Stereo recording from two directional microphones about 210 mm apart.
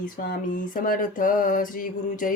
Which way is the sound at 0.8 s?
40° left (ahead or behind).